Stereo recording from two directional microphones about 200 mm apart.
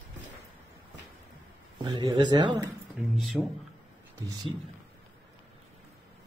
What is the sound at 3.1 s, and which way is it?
Speech, centre (ahead or behind).